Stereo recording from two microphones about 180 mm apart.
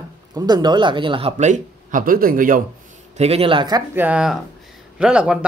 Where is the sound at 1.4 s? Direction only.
45° right (ahead or behind).